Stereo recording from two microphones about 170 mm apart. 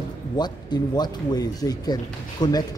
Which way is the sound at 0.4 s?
25° left (ahead or behind).